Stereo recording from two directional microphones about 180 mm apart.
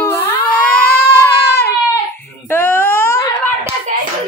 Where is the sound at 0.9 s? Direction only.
60° left (ahead or behind).